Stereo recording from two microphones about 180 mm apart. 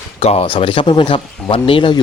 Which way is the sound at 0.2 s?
35° left (ahead or behind).